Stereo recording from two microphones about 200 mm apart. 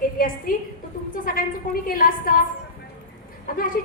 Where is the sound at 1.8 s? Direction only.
45° left (ahead or behind).